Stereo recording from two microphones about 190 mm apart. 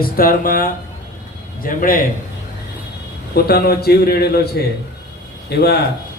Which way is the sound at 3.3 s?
55° left (ahead or behind).